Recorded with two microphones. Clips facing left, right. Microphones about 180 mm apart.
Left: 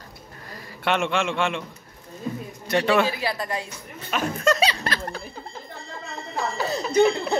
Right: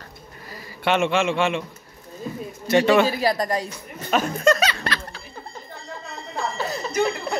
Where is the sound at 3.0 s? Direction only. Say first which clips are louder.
Right 5 dB; 40° right (ahead or behind).